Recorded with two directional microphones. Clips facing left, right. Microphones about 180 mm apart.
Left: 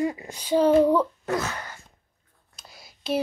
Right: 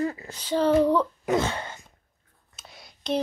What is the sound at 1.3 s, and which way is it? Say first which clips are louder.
Wail: right 3 dB; 25° right (ahead or behind).